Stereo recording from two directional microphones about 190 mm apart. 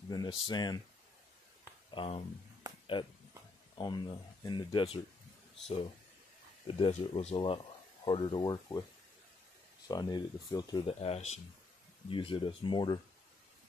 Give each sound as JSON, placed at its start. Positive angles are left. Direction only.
{"t": 0.1, "sound": "speech", "side_deg": 20}
{"t": 2.0, "sound": "speech", "side_deg": 30}
{"t": 6.8, "sound": "speech", "side_deg": 35}
{"t": 9.8, "sound": "speech", "side_deg": 20}
{"t": 11.0, "sound": "speech", "side_deg": 35}